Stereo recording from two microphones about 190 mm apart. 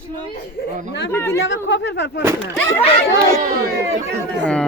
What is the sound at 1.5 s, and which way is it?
Speech, 70° left (ahead or behind).